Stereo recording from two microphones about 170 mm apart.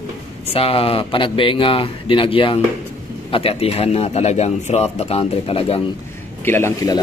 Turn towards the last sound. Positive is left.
turn(degrees=15)  # may be behind; listen again after turning